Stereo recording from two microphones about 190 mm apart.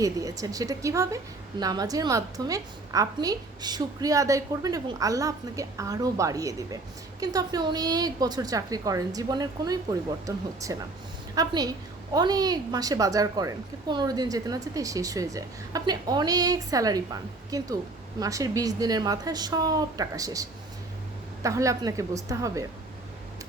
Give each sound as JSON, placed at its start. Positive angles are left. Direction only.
{"t": 0.0, "sound": "a woman's voice", "side_deg": -20}